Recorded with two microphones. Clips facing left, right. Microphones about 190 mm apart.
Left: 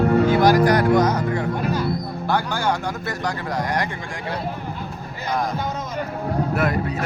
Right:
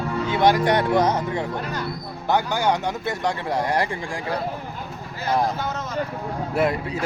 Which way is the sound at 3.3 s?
30° right (ahead or behind).